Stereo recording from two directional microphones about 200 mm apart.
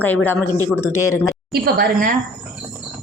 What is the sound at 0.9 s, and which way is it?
Speech, 90° left.